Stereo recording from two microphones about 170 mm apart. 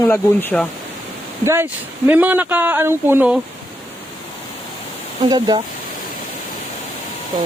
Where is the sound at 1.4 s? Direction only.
15° right (ahead or behind).